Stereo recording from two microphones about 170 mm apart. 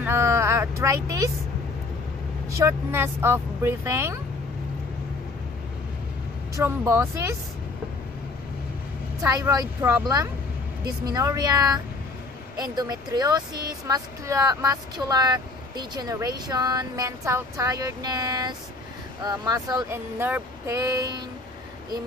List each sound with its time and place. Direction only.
0.0 s speech: 15° right (ahead or behind)
2.5 s speech: 15° right (ahead or behind)
6.5 s speech: 20° right (ahead or behind)
9.2 s speech: 20° right (ahead or behind)